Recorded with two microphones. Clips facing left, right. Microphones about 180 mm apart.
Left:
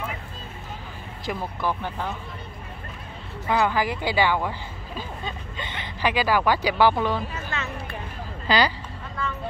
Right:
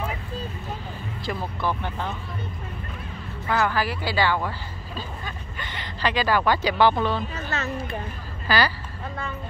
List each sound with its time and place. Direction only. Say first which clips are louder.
1.2 s speech: even; 15° left (ahead or behind)
3.4 s speech: left 1 dB; 15° left (ahead or behind)
7.3 s music: right 3 dB; 40° right (ahead or behind)
8.5 s speech: left 1 dB; 15° left (ahead or behind)